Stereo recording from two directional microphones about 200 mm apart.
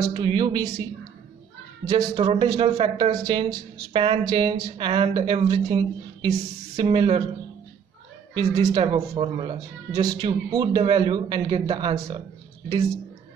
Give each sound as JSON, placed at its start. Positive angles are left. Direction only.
{"t": 0.1, "sound": "speech", "side_deg": -25}
{"t": 1.9, "sound": "speech", "side_deg": -20}
{"t": 8.4, "sound": "speech", "side_deg": -20}